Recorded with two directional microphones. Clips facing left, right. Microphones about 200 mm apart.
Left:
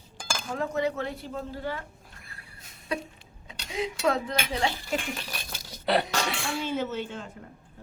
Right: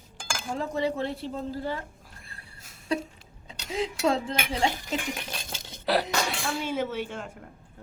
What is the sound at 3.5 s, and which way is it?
Speech, 30° right (ahead or behind).